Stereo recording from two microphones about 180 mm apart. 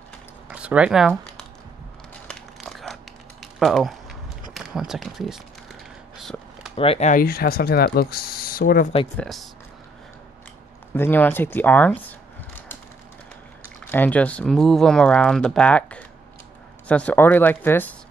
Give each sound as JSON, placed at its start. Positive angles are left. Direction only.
{"t": 0.5, "sound": "speech", "side_deg": -5}
{"t": 2.2, "sound": "a sound", "side_deg": 0}
{"t": 4.6, "sound": "speech", "side_deg": 0}
{"t": 6.1, "sound": "a sound", "side_deg": 0}
{"t": 6.8, "sound": "speech", "side_deg": 35}
{"t": 9.1, "sound": "speech", "side_deg": 0}
{"t": 10.9, "sound": "speech", "side_deg": 10}
{"t": 13.8, "sound": "speech", "side_deg": 10}